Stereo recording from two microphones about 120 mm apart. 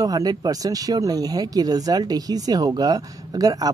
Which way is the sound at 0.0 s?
30° right (ahead or behind).